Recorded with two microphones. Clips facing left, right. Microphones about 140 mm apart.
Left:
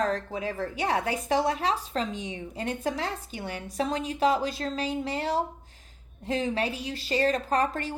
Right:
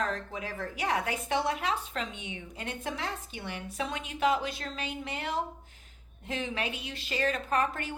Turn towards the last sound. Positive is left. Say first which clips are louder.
# left 3 dB
turn(degrees=35)  # may be behind; listen again after turning